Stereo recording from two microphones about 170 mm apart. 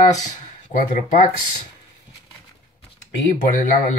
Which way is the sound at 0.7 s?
50° left (ahead or behind).